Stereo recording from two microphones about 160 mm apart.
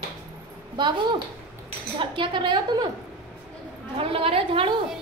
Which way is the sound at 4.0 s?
35° right (ahead or behind).